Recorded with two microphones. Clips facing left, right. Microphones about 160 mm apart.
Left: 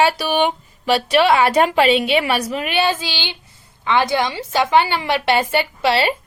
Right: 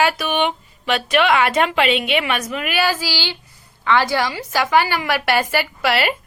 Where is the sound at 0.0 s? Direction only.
30° left (ahead or behind).